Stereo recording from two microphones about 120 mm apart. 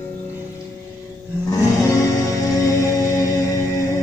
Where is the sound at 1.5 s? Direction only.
30° left (ahead or behind).